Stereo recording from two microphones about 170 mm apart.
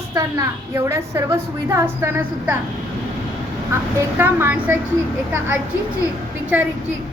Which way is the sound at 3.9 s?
15° right (ahead or behind).